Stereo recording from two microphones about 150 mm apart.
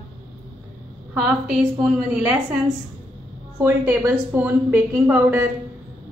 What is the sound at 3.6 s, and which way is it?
A woman's voice, 15° right (ahead or behind).